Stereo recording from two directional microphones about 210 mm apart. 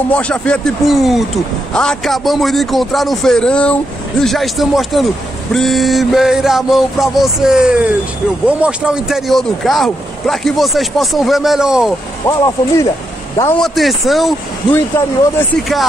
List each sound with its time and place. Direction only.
0.1 s a man's voice: 5° left (ahead or behind)
12.3 s speech: 15° left (ahead or behind)
13.7 s a man's voice: centre (ahead or behind)